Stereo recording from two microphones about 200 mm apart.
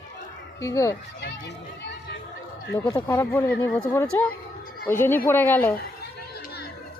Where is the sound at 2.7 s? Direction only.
15° left (ahead or behind).